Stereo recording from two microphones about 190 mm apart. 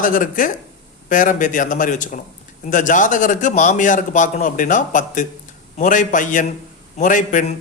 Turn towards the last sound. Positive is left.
turn(degrees=40)  # may be behind; listen again after turning